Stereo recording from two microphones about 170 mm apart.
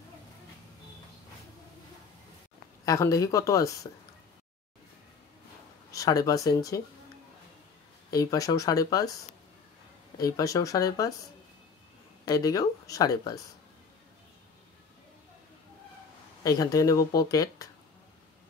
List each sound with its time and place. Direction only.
2.8 s speech: 20° left (ahead or behind)
5.9 s speech: 20° left (ahead or behind)
8.1 s speech: 20° left (ahead or behind)
12.3 s speech: 20° left (ahead or behind)
16.4 s speech: 20° left (ahead or behind)